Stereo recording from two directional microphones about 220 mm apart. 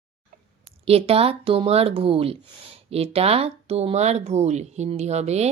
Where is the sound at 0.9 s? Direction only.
25° right (ahead or behind).